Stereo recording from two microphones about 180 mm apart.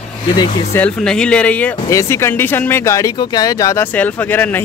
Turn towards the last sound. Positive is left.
turn(degrees=10)  # may be behind; listen again after turning